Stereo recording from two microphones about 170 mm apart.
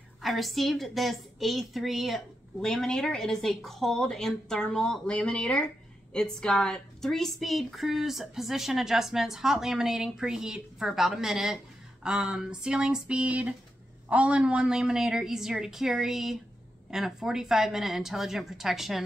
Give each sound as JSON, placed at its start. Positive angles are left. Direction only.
{"t": 0.2, "sound": "a woman's voice", "side_deg": 0}